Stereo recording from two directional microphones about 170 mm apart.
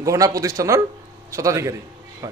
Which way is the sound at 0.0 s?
20° right (ahead or behind).